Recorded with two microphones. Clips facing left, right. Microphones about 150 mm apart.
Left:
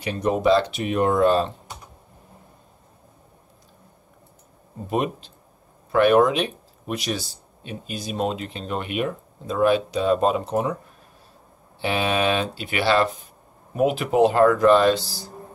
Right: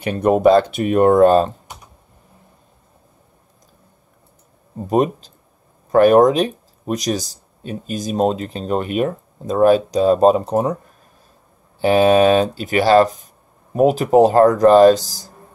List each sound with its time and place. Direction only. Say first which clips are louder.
0.0 s speech: right 7 dB; 55° right (ahead or behind)
4.8 s speech: right 7 dB; 40° right (ahead or behind)
11.8 s speech: right 10 dB; 40° right (ahead or behind)